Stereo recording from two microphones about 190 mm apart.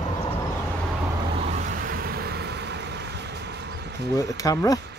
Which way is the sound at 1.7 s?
50° right (ahead or behind).